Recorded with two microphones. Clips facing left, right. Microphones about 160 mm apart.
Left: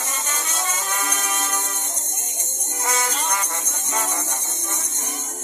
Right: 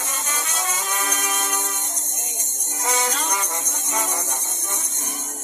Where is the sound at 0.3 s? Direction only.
15° right (ahead or behind).